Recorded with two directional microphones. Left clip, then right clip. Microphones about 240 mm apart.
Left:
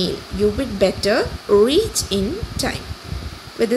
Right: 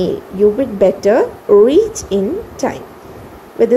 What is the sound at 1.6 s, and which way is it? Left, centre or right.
A woman's voice, centre.